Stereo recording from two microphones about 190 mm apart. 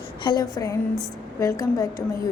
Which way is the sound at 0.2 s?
20° left (ahead or behind).